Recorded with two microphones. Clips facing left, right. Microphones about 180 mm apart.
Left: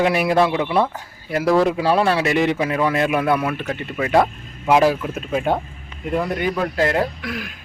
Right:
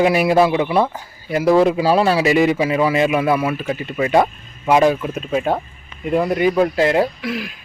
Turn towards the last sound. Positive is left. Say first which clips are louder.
# right 4 dB
turn(degrees=-5)  # may be behind; listen again after turning